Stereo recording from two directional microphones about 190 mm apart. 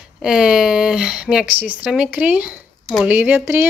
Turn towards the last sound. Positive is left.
turn(degrees=-10)  # may be behind; listen again after turning